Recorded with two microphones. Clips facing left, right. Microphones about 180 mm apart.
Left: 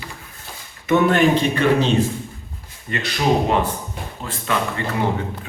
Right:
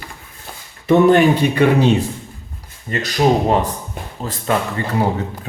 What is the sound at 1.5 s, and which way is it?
Speech, 10° right (ahead or behind).